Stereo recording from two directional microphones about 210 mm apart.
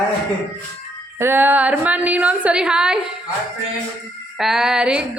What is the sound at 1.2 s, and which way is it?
A woman's voice, 10° right (ahead or behind).